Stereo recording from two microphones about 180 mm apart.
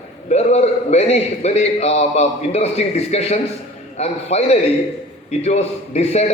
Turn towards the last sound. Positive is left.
turn(degrees=35)  # may be behind; listen again after turning